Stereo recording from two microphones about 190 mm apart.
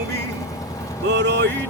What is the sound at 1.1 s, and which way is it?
Speech, 65° right (ahead or behind).